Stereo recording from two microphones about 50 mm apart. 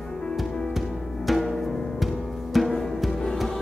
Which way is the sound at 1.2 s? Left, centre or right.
Centre.